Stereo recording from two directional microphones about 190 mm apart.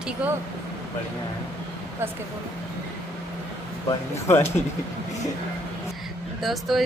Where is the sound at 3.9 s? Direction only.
15° left (ahead or behind).